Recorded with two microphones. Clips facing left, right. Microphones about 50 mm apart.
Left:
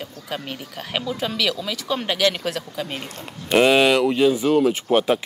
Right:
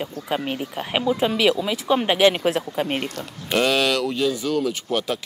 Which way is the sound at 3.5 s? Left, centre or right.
Left.